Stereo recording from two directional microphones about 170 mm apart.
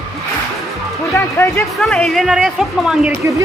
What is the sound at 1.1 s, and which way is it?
Speech, 15° left (ahead or behind).